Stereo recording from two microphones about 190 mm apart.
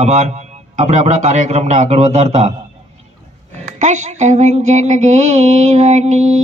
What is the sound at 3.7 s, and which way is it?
Mantra, 40° right (ahead or behind).